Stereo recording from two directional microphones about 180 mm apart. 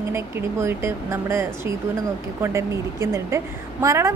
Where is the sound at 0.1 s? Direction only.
15° right (ahead or behind).